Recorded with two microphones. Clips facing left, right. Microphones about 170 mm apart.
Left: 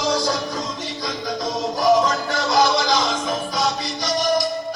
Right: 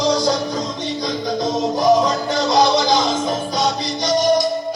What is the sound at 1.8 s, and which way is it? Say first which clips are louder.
Music: right 1 dB; 20° right (ahead or behind).